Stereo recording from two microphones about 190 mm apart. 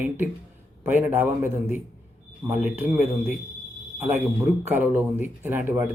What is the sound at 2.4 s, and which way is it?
Speech, 25° right (ahead or behind).